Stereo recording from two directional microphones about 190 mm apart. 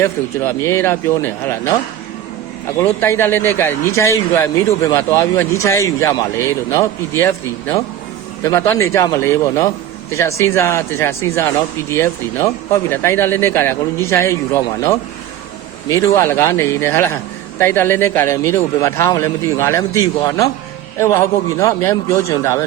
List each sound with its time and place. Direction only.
0.0 s a man's voice: 15° left (ahead or behind)
2.8 s a man's voice: 15° left (ahead or behind)
16.1 s a man's voice: 10° left (ahead or behind)